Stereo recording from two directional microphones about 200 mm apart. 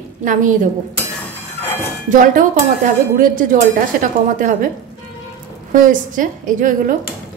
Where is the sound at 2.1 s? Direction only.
40° right (ahead or behind).